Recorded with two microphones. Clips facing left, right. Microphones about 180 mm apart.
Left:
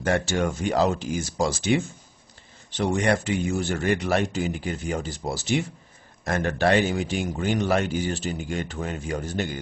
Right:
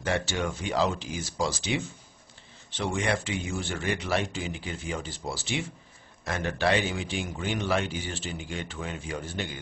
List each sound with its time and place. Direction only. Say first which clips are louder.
0.0 s a man's voice: left 5 dB; 45° left (ahead or behind)